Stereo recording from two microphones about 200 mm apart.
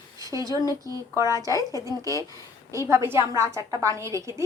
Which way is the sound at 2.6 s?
15° right (ahead or behind).